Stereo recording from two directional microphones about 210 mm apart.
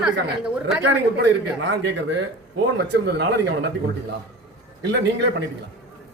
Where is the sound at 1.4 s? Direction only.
55° right (ahead or behind).